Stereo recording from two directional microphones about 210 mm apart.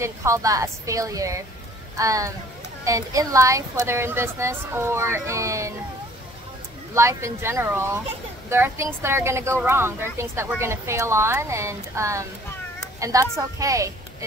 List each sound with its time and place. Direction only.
0.0 s a woman's voice: 15° right (ahead or behind)
6.9 s a woman's voice: 15° right (ahead or behind)